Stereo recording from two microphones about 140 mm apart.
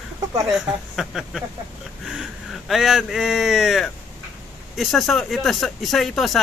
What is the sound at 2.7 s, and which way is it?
Speech, 5° right (ahead or behind).